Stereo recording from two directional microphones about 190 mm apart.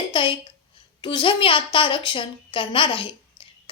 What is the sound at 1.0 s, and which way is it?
A woman's voice, 25° left (ahead or behind).